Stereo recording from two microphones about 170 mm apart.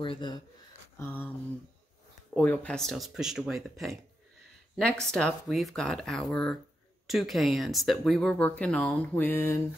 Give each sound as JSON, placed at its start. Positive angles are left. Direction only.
{"t": 0.0, "sound": "speech", "side_deg": 30}
{"t": 0.9, "sound": "speech", "side_deg": 15}
{"t": 2.3, "sound": "speech", "side_deg": 10}